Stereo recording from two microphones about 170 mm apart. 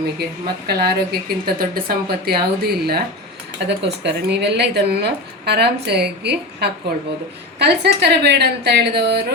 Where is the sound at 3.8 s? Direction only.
85° right.